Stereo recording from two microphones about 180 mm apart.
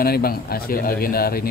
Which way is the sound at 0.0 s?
55° left (ahead or behind).